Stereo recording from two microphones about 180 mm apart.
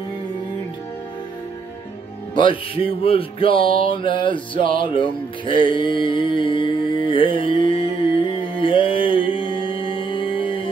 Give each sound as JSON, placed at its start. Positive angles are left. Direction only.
{"t": 2.3, "sound": "music", "side_deg": 30}
{"t": 5.5, "sound": "mantra", "side_deg": 25}